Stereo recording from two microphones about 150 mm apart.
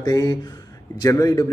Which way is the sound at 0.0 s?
25° left (ahead or behind).